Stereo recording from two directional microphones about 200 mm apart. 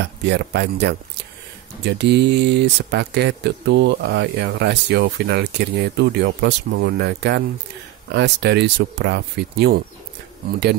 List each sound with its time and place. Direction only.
0.2 s speech: 55° right (ahead or behind)